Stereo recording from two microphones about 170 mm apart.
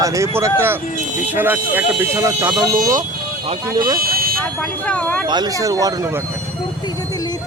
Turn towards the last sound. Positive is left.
turn(degrees=-20)  # may be behind; listen again after turning